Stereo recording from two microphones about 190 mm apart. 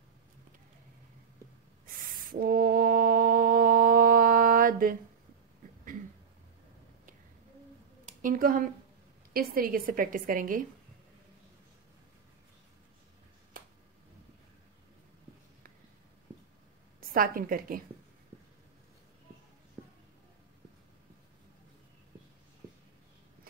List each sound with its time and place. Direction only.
1.9 s a sound: 45° right (ahead or behind)
8.2 s a woman's voice: 45° right (ahead or behind)
17.0 s a woman's voice: 50° right (ahead or behind)